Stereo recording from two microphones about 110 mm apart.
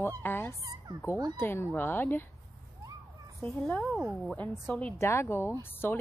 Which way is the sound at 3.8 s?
Centre (ahead or behind).